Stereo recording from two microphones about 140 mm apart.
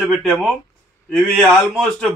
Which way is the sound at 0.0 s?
Centre (ahead or behind).